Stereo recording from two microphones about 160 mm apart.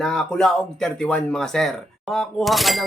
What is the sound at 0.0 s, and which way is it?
Speech, 5° left (ahead or behind).